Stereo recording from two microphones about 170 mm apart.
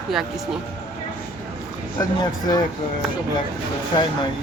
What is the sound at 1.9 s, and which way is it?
Speech, 25° left (ahead or behind).